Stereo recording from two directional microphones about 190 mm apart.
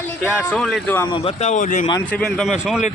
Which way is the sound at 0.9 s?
15° left (ahead or behind).